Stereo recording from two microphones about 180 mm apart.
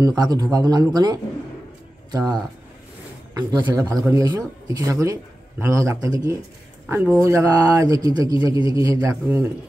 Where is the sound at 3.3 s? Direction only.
20° right (ahead or behind).